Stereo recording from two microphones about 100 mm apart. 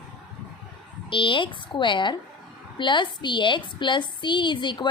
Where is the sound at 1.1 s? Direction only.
55° left (ahead or behind).